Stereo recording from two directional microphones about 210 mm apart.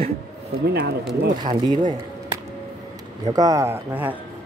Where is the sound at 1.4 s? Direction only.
20° right (ahead or behind).